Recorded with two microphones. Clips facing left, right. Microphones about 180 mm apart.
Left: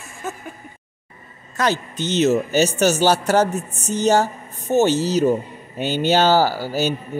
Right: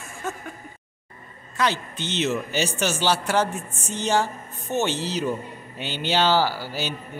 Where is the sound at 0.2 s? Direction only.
5° left (ahead or behind).